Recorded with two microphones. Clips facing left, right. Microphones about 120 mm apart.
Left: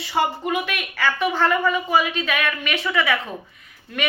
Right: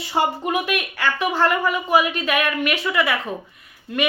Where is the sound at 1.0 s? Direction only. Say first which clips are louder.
Even; 10° right (ahead or behind).